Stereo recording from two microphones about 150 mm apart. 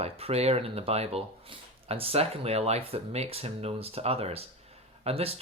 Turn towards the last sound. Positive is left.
turn(degrees=-40)  # may be behind; listen again after turning